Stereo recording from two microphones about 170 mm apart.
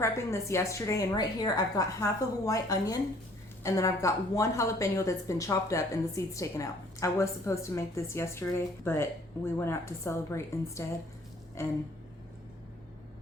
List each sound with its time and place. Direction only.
0.0 s a woman's voice: 15° left (ahead or behind)